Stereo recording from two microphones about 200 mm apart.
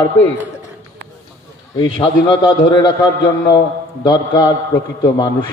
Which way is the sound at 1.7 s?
25° left (ahead or behind).